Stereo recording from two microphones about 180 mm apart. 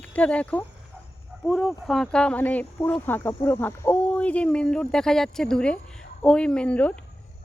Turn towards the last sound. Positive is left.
turn(degrees=5)  # may be behind; listen again after turning